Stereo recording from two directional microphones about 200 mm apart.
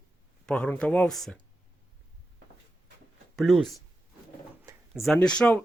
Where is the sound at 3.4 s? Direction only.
Centre (ahead or behind).